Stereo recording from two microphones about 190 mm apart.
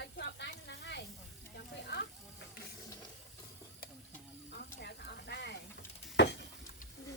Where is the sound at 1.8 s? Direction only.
65° left (ahead or behind).